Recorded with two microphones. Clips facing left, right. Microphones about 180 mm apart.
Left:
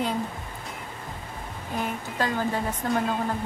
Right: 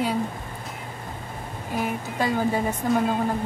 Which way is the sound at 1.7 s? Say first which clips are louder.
Right 3 dB; 5° right (ahead or behind).